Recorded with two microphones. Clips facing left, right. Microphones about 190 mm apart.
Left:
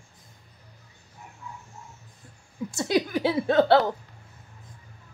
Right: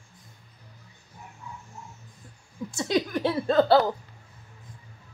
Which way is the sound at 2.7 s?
5° left (ahead or behind).